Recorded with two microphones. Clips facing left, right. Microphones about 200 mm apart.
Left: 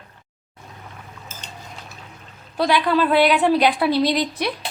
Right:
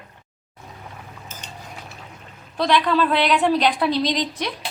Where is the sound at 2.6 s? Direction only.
5° left (ahead or behind).